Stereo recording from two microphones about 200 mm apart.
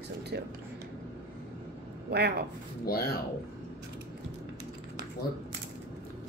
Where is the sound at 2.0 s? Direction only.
55° right (ahead or behind).